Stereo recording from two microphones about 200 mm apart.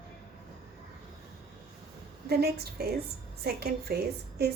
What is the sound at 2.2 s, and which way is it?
A woman's voice, 50° right (ahead or behind).